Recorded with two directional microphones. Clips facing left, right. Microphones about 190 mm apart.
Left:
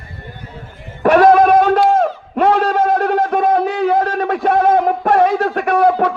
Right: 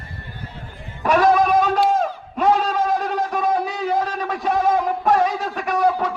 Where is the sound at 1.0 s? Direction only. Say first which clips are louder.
Left 7 dB; 60° left (ahead or behind).